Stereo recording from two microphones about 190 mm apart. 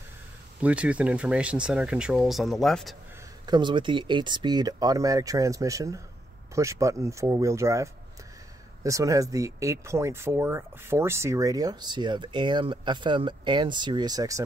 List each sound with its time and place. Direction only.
0.6 s speech: 5° right (ahead or behind)
3.4 s speech: 25° right (ahead or behind)